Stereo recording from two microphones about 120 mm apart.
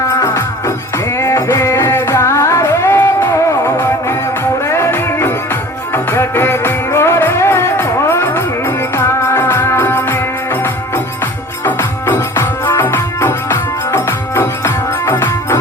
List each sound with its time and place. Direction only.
1.2 s music: 25° left (ahead or behind)